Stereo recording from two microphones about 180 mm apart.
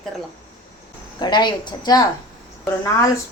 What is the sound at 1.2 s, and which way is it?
A woman's voice, 25° left (ahead or behind).